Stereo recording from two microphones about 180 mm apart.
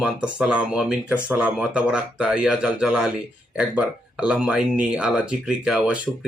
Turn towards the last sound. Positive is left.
turn(degrees=-5)  # may be behind; listen again after turning